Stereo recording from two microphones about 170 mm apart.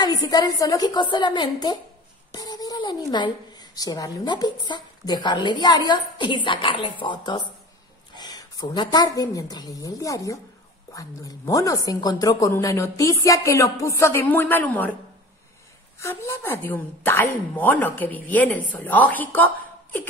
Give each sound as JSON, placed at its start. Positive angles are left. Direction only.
{"t": 0.0, "sound": "a woman's voice", "side_deg": 20}
{"t": 16.0, "sound": "a woman's voice", "side_deg": 15}